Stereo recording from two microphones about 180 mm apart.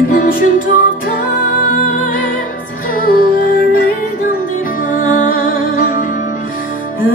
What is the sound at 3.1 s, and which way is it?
Music, 50° left (ahead or behind).